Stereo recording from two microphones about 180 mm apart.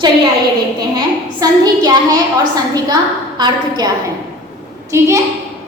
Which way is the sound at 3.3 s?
25° right (ahead or behind).